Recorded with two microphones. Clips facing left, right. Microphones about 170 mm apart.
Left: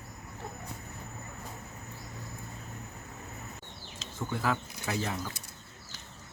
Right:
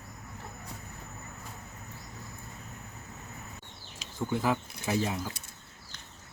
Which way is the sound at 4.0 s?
15° right (ahead or behind).